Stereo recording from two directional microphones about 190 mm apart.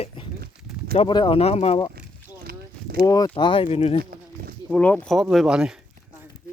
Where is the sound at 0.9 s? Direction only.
25° left (ahead or behind).